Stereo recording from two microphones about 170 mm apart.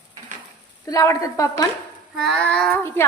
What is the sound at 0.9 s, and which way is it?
Speech, 20° left (ahead or behind).